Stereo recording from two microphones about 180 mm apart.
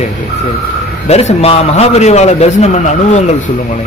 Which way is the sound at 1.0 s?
35° left (ahead or behind).